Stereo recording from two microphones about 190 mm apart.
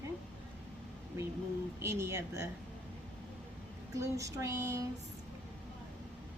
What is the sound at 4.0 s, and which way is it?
Speech, 15° right (ahead or behind).